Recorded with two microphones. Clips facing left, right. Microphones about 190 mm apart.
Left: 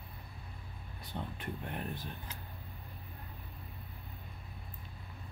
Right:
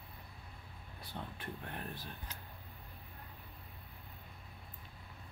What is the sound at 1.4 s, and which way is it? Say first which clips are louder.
Speech: left 4 dB; 20° left (ahead or behind).